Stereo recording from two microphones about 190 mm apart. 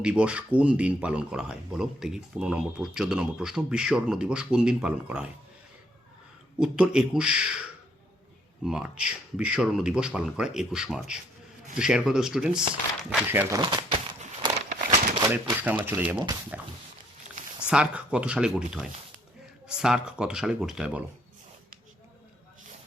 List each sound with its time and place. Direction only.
0.0 s speech: 5° right (ahead or behind)
6.6 s speech: 5° right (ahead or behind)
8.6 s speech: 5° right (ahead or behind)
13.6 s a sound: 25° right (ahead or behind)
15.3 s speech: 10° right (ahead or behind)
16.5 s a sound: 10° right (ahead or behind)
17.7 s speech: 5° right (ahead or behind)